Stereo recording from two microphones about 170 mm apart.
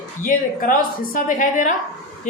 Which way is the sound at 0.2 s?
55° left (ahead or behind).